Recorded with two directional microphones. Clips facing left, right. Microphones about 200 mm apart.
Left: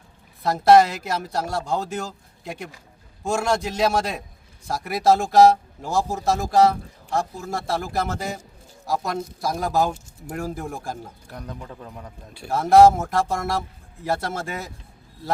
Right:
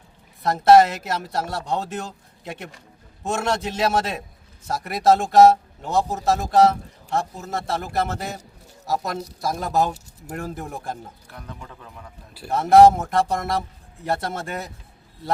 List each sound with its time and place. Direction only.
0.4 s speech: centre (ahead or behind)
9.4 s speech: centre (ahead or behind)
11.3 s a man's voice: 40° left (ahead or behind)
12.3 s speech: centre (ahead or behind)